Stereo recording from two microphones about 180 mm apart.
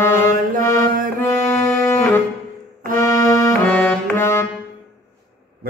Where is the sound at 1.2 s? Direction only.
20° left (ahead or behind).